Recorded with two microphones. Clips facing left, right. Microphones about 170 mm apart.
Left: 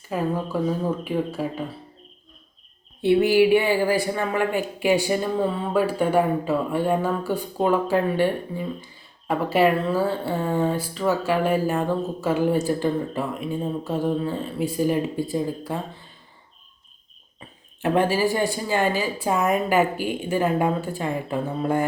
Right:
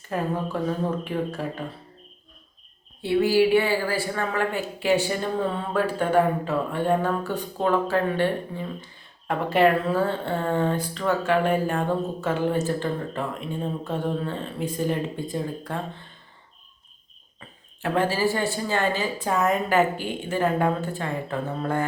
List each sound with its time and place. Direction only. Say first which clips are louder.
0.1 s speech: left 2 dB; 5° left (ahead or behind)
3.0 s speech: left 3 dB; 20° left (ahead or behind)
17.8 s speech: left 3 dB; 15° left (ahead or behind)